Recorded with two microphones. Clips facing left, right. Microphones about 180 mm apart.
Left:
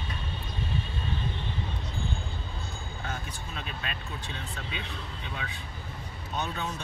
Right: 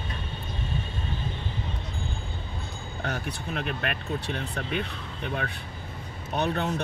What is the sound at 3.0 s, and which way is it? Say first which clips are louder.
Speech: right 7 dB; 65° right (ahead or behind).